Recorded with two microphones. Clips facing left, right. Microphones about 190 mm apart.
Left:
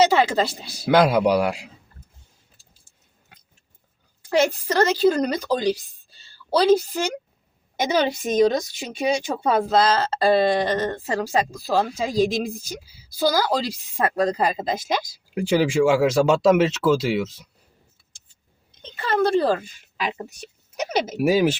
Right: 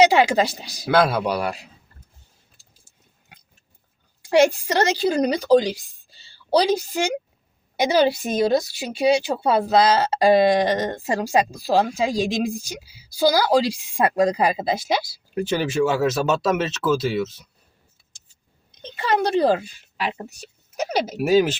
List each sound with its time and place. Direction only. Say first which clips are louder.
0.0 s speech: right 2 dB; 15° right (ahead or behind)
0.9 s speech: left 3 dB; 15° left (ahead or behind)
4.6 s a woman's voice: left 2 dB; 10° right (ahead or behind)
15.4 s speech: left 2 dB; 10° left (ahead or behind)
18.8 s speech: even; 15° right (ahead or behind)
21.2 s speech: right 1 dB; 10° left (ahead or behind)